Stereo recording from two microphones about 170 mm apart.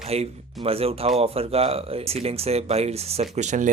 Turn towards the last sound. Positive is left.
turn(degrees=-45)  # may be behind; listen again after turning